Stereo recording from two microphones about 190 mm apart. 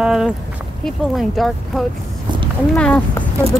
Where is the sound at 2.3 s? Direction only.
25° right (ahead or behind).